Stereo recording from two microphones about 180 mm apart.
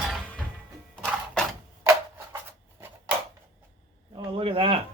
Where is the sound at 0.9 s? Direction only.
5° left (ahead or behind).